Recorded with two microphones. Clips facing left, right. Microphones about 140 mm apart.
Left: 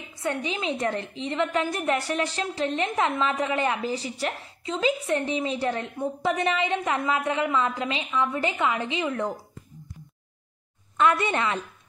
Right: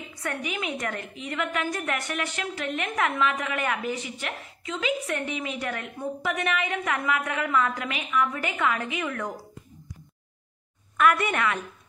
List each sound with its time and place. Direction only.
0.1 s a woman's voice: 25° left (ahead or behind)
11.0 s a woman's voice: 25° left (ahead or behind)